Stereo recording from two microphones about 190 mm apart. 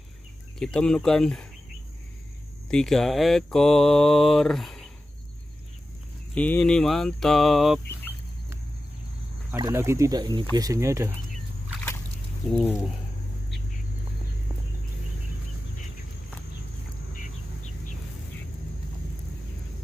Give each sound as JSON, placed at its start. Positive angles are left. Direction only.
{"t": 0.6, "sound": "speech", "side_deg": 5}
{"t": 2.7, "sound": "speech", "side_deg": 5}
{"t": 6.3, "sound": "speech", "side_deg": 5}
{"t": 9.6, "sound": "speech", "side_deg": -15}
{"t": 12.4, "sound": "speech", "side_deg": 0}